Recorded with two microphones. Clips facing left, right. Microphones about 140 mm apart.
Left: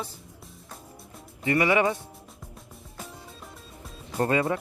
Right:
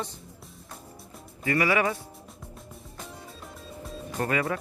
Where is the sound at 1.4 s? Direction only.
20° left (ahead or behind).